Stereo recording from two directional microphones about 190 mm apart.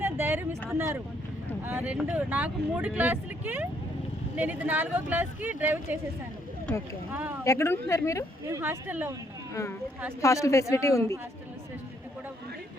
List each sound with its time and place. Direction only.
0.0 s a sound: 10° right (ahead or behind)
0.7 s speech: 10° right (ahead or behind)
7.1 s speech: 10° right (ahead or behind)
7.4 s a woman's voice: 15° left (ahead or behind)
8.4 s speech: 15° right (ahead or behind)
10.2 s a woman's voice: 15° left (ahead or behind)